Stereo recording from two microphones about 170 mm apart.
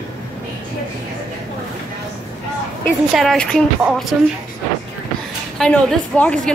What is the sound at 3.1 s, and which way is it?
Speech, 5° left (ahead or behind).